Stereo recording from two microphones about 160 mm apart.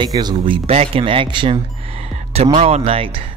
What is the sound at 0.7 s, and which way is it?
Speech, 40° right (ahead or behind).